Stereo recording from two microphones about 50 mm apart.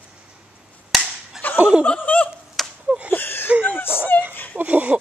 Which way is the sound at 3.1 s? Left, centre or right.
Left.